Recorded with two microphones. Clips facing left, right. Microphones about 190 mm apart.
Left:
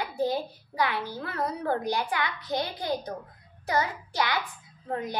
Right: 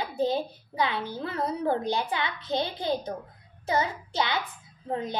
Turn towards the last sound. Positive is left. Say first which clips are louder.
# right 1 dB
turn(degrees=-20)  # may be behind; listen again after turning